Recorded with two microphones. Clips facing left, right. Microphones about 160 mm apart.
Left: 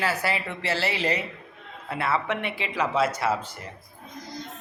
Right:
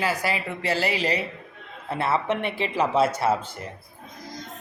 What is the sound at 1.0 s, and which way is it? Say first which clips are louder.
Speech: right 1 dB; 35° right (ahead or behind).